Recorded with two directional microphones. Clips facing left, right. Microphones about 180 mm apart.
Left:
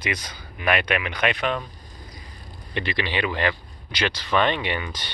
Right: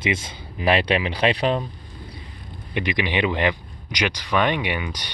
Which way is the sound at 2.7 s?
15° right (ahead or behind).